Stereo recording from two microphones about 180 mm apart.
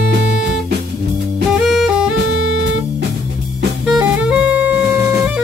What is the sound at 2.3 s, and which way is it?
Music, 80° right.